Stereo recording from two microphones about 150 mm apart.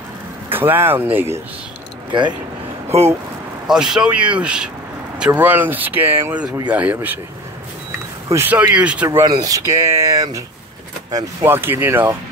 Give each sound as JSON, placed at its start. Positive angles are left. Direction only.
{"t": 0.5, "sound": "speech", "side_deg": -15}
{"t": 2.9, "sound": "speech", "side_deg": -45}
{"t": 3.6, "sound": "speech", "side_deg": -5}
{"t": 8.3, "sound": "speech", "side_deg": -15}
{"t": 11.4, "sound": "speech", "side_deg": -15}